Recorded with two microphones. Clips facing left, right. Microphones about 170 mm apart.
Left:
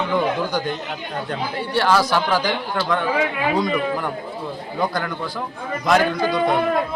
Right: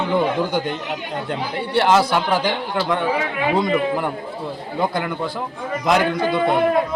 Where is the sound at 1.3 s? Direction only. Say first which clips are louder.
Right 2 dB; 20° right (ahead or behind).